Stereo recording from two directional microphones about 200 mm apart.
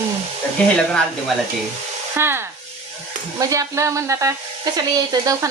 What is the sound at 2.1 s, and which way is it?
Speech, 10° right (ahead or behind).